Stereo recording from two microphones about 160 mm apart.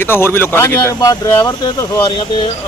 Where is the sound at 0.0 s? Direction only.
15° left (ahead or behind).